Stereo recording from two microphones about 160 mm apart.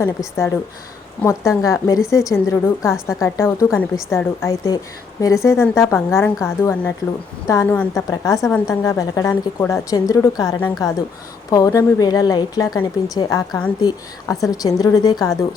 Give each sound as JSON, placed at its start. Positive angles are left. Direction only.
{"t": 0.0, "sound": "a woman's voice", "side_deg": 15}